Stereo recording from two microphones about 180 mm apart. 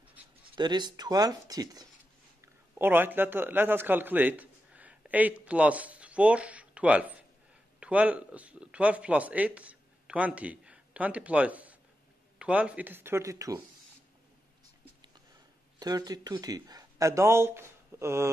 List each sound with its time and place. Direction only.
0.6 s a man's voice: 25° right (ahead or behind)
15.8 s speech: 20° right (ahead or behind)